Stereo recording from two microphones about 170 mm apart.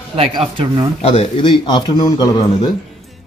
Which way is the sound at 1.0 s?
35° left (ahead or behind).